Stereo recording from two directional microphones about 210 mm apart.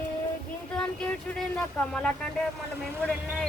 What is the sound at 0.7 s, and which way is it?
A woman's voice, 5° left (ahead or behind).